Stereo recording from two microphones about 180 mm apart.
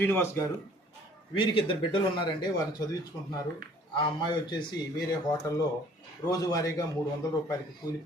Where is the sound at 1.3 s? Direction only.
30° left (ahead or behind).